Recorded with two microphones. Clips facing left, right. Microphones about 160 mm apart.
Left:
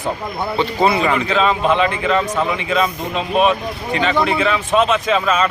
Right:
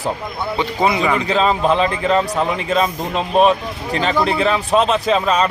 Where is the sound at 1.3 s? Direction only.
35° right (ahead or behind).